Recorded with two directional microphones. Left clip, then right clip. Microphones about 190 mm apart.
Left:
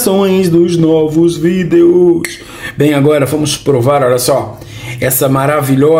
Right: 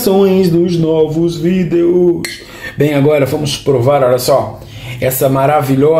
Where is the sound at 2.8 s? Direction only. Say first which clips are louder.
Left 1 dB; 20° left (ahead or behind).